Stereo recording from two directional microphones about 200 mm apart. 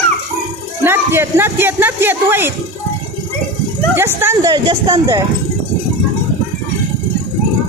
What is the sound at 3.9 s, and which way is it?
Speech, 10° right (ahead or behind).